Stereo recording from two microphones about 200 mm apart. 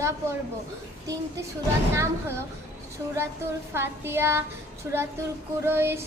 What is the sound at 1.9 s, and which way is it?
Child singing, 15° right (ahead or behind).